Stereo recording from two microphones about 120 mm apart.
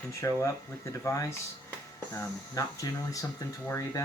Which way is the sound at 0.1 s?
25° left (ahead or behind).